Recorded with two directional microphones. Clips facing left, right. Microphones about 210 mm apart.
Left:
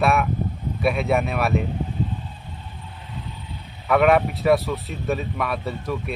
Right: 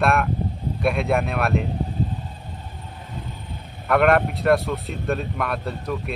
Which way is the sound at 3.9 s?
Centre (ahead or behind).